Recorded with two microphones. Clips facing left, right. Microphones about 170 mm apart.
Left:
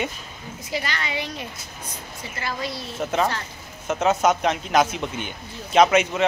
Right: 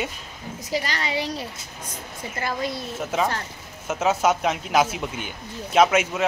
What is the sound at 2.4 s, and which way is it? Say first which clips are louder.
Speech: right 2 dB; 50° right (ahead or behind).